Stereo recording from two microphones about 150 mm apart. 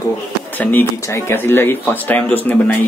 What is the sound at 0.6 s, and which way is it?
Speech, 10° left (ahead or behind).